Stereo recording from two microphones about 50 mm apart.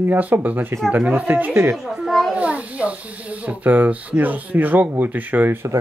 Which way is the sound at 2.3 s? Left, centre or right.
Right.